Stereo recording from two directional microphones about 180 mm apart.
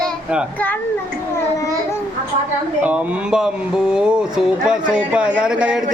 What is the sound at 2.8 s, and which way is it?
Speech, 5° right (ahead or behind).